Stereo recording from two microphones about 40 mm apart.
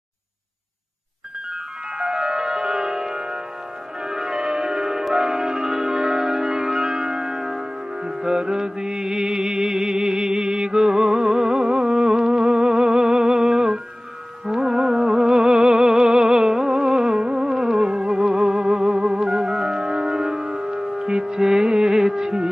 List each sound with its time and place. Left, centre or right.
2.0 s music: centre
7.5 s music: right
8.4 s mantra: centre
11.8 s music: centre
14.4 s music: centre
14.7 s music: centre